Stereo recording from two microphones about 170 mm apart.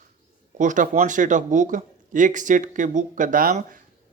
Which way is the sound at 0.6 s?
50° right (ahead or behind).